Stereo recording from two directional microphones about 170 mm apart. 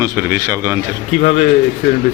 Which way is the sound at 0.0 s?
15° right (ahead or behind).